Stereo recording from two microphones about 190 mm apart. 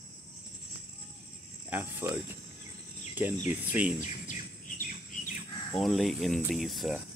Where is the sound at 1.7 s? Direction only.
10° right (ahead or behind).